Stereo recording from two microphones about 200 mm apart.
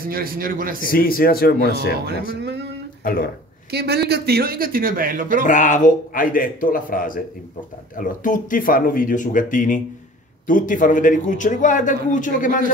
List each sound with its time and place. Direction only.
0.0 s speech: 45° right (ahead or behind)
0.8 s speech: 45° left (ahead or behind)
2.4 s speech: 60° right (ahead or behind)
3.0 s speech: 45° left (ahead or behind)
3.7 s speech: 55° right (ahead or behind)
5.5 s a man's voice: 40° left (ahead or behind)